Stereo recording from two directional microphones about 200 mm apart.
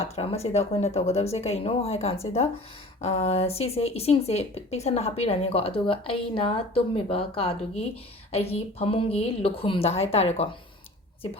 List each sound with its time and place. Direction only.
0.0 s a woman's voice: 30° left (ahead or behind)